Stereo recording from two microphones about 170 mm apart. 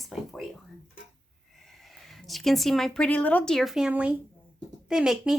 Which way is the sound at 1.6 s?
Centre (ahead or behind).